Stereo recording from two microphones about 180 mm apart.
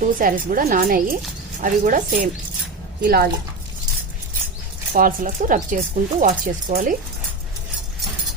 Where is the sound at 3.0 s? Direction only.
60° right (ahead or behind).